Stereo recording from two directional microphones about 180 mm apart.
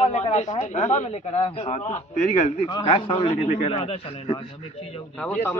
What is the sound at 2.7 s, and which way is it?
A man's voice, 25° left (ahead or behind).